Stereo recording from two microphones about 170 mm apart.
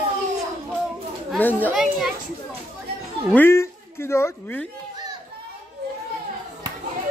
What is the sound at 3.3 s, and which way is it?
Speech, 15° left (ahead or behind).